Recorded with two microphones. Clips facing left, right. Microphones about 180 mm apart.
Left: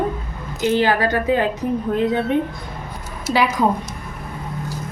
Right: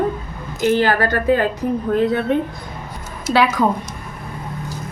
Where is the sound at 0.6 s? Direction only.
20° left (ahead or behind).